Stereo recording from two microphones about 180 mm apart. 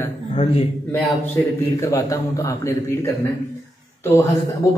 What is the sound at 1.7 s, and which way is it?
A man's voice, 20° left (ahead or behind).